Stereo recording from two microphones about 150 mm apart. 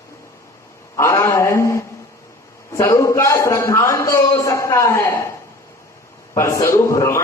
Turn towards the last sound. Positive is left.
turn(degrees=20)  # may be behind; listen again after turning